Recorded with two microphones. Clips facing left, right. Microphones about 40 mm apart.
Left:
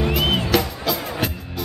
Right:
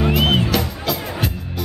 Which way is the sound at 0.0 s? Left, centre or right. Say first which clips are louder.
Right 3 dB; centre.